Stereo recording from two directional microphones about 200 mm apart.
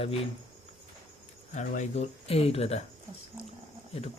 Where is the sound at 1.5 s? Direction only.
35° left (ahead or behind).